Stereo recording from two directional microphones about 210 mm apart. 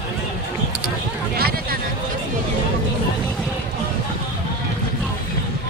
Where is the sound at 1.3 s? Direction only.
45° right (ahead or behind).